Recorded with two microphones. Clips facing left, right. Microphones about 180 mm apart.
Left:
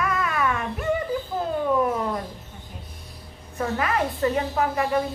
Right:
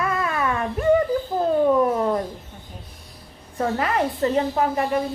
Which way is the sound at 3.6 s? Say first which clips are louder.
Right 2 dB; 30° right (ahead or behind).